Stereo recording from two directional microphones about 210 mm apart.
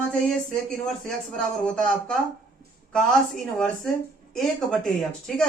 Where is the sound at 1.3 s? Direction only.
5° left (ahead or behind).